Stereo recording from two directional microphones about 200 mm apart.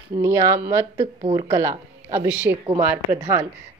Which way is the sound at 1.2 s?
30° right (ahead or behind).